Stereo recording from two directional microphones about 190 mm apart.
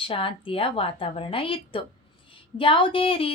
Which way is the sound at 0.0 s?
30° left (ahead or behind).